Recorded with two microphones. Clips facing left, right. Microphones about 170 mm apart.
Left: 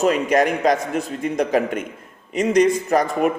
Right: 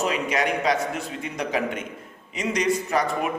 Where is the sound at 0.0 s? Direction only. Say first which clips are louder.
Left 7 dB; 45° left (ahead or behind).